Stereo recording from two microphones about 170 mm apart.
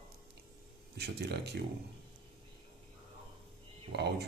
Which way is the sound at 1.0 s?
75° right (ahead or behind).